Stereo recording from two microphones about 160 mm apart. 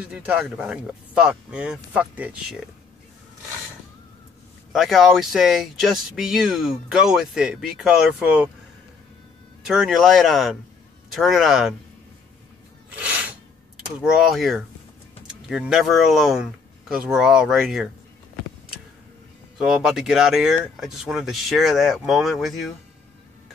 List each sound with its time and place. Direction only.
0.0 s speech: 10° right (ahead or behind)
4.7 s speech: centre (ahead or behind)
9.7 s speech: centre (ahead or behind)
12.9 s a sound: 10° right (ahead or behind)
13.7 s speech: centre (ahead or behind)
19.6 s speech: 5° right (ahead or behind)